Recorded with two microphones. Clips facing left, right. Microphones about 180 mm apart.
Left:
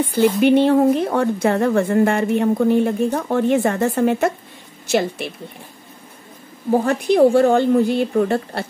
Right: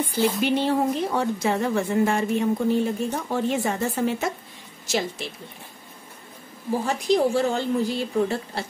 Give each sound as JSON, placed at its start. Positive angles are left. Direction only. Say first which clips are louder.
{"t": 0.1, "sound": "a woman's voice", "louder": "left 9 dB", "side_deg": 55}
{"t": 6.7, "sound": "a woman's voice", "louder": "left 6 dB", "side_deg": 60}